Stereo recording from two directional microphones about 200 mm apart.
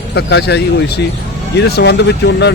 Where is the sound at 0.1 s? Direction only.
60° left (ahead or behind).